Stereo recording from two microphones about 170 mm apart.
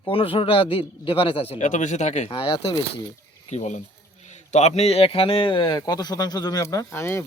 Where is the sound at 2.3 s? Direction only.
30° left (ahead or behind).